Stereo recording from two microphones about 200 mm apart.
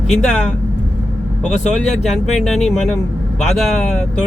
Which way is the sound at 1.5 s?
35° left (ahead or behind).